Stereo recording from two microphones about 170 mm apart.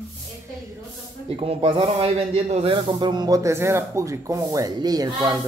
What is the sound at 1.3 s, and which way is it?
Speech, 30° right (ahead or behind).